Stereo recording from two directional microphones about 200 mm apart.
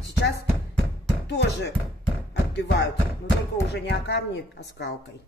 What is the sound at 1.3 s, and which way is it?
Speech, 60° left (ahead or behind).